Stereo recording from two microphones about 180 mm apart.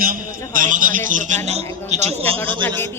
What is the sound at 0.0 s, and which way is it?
A man's voice, 50° right (ahead or behind).